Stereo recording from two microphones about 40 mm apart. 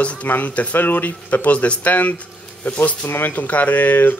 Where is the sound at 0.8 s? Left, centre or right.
Left.